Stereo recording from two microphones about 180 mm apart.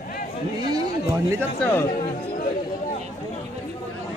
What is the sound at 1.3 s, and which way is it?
Speech, 10° left (ahead or behind).